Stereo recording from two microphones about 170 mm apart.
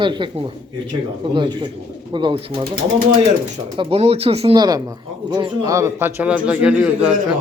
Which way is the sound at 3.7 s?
35° right (ahead or behind).